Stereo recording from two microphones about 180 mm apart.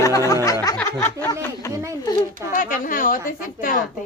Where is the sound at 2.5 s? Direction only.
50° left (ahead or behind).